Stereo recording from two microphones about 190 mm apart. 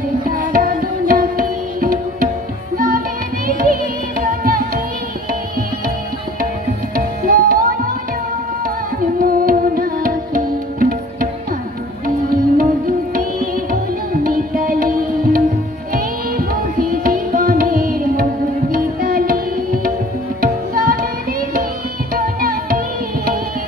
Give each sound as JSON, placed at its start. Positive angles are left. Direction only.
{"t": 0.3, "sound": "music", "side_deg": -50}
{"t": 3.4, "sound": "music", "side_deg": -50}
{"t": 7.2, "sound": "music", "side_deg": -50}
{"t": 9.2, "sound": "music", "side_deg": -50}
{"t": 12.5, "sound": "music", "side_deg": -45}